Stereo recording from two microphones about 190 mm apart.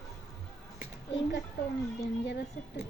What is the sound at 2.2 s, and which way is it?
Speech, 65° left (ahead or behind).